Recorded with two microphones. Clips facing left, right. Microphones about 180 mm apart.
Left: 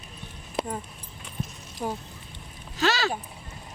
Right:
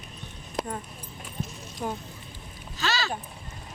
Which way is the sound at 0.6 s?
Centre (ahead or behind).